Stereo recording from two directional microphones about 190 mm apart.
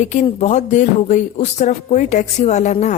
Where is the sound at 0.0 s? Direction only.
40° left (ahead or behind).